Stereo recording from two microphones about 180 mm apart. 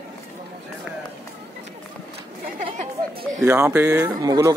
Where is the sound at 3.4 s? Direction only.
15° right (ahead or behind).